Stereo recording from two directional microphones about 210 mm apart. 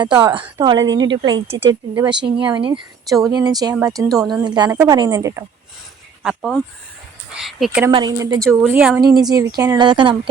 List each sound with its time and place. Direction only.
0.0 s speech: 20° right (ahead or behind)
6.2 s speech: centre (ahead or behind)
7.9 s speech: 20° right (ahead or behind)
8.7 s speech: 5° right (ahead or behind)
9.0 s speech: 20° right (ahead or behind)